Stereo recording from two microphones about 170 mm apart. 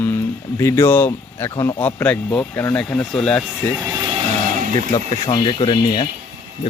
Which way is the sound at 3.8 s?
25° right (ahead or behind).